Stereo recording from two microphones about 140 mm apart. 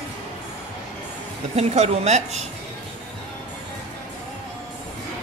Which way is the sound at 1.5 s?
50° right (ahead or behind).